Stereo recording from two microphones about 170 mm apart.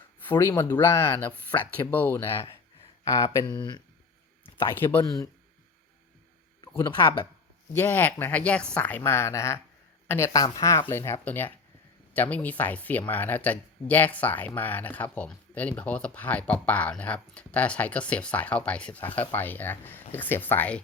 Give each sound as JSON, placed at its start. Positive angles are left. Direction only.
{"t": 0.3, "sound": "speech", "side_deg": 15}
{"t": 4.4, "sound": "speech", "side_deg": 10}
{"t": 6.6, "sound": "speech", "side_deg": 25}
{"t": 7.7, "sound": "speech", "side_deg": 15}